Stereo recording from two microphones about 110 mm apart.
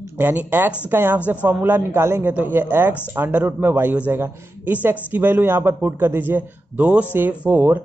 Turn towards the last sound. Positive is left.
turn(degrees=-15)  # may be behind; listen again after turning